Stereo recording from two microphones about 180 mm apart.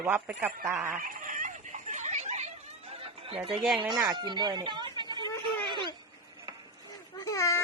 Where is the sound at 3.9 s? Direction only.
25° right (ahead or behind).